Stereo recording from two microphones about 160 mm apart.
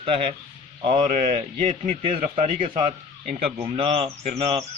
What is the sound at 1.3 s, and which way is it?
Speech, 45° right (ahead or behind).